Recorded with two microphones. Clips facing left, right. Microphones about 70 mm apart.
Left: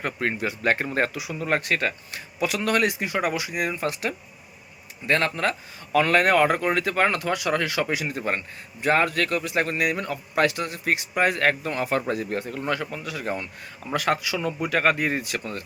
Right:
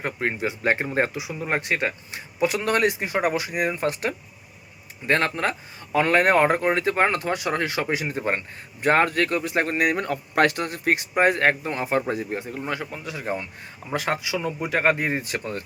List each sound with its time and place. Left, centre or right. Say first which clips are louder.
0.0 s speech: even; right
2.5 s a man's voice: left 1 dB; right